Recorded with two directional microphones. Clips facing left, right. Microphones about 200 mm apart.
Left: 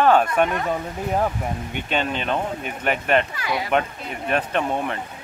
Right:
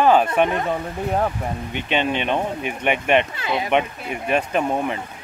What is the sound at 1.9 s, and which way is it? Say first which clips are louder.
Speech: right 3 dB; 5° right (ahead or behind).